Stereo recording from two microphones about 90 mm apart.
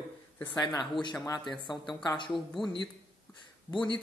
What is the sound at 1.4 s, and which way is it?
Speech, centre (ahead or behind).